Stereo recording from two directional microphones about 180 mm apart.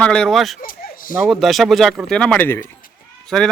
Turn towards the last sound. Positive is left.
turn(degrees=0)  # may be behind; listen again after turning